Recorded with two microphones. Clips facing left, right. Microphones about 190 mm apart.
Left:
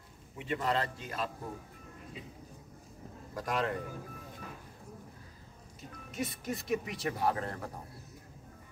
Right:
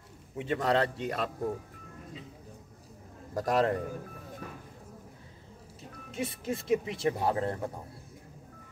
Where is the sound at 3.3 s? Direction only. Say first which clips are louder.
Right 7 dB; 40° right (ahead or behind).